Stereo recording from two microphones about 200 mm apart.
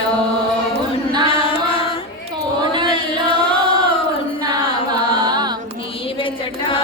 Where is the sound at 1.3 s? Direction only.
25° left (ahead or behind).